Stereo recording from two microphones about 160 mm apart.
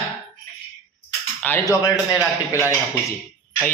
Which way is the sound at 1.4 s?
10° left (ahead or behind).